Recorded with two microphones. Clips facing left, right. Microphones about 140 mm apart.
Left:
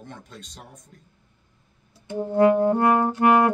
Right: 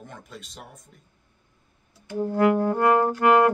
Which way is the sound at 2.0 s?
20° left (ahead or behind).